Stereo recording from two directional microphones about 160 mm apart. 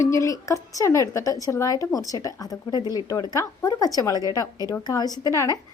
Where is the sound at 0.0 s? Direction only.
20° left (ahead or behind).